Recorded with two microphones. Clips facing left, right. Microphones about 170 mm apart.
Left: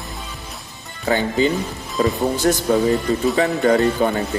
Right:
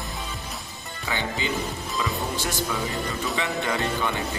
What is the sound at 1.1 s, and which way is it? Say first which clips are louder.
Speech: left 11 dB; 40° left (ahead or behind).